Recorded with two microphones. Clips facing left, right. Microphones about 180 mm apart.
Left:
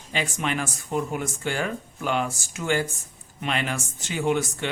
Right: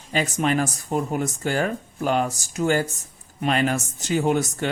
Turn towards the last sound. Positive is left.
turn(degrees=-40)  # may be behind; listen again after turning